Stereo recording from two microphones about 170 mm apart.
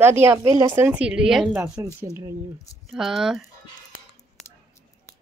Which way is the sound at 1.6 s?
15° right (ahead or behind).